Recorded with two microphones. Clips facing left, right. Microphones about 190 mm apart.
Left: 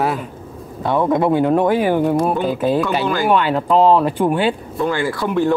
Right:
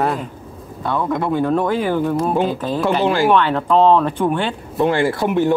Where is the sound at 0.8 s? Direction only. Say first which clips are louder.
Left 4 dB; 20° left (ahead or behind).